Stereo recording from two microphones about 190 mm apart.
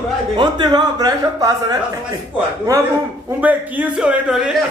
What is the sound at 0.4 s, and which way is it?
Speech, 20° right (ahead or behind).